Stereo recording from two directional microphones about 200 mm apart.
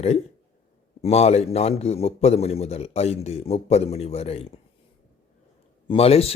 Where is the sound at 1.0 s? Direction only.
30° left (ahead or behind).